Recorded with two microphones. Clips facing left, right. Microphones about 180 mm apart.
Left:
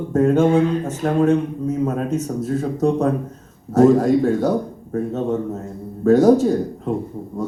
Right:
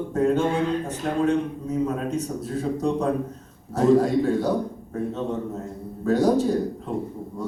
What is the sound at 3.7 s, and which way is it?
Speech, 45° left (ahead or behind).